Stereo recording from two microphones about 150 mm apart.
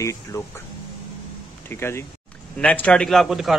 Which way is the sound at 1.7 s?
15° left (ahead or behind).